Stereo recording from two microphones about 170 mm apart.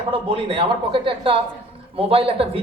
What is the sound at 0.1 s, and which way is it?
Speech, 30° right (ahead or behind).